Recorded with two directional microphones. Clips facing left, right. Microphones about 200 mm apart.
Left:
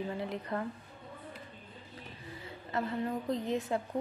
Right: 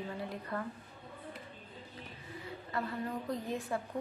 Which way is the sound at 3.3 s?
20° left (ahead or behind).